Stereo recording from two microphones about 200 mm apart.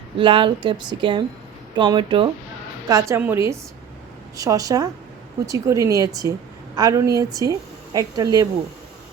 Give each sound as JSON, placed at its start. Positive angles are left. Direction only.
{"t": 0.2, "sound": "speech", "side_deg": -25}
{"t": 2.9, "sound": "speech", "side_deg": -10}